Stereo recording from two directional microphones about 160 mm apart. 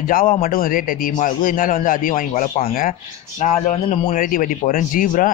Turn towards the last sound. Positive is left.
turn(degrees=55)  # may be behind; listen again after turning